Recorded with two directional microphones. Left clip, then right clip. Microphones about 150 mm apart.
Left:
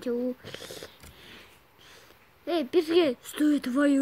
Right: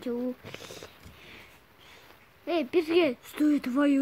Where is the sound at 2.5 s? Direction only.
10° left (ahead or behind).